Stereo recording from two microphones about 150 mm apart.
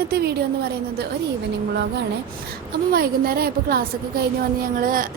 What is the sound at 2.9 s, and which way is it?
Speech, 80° right.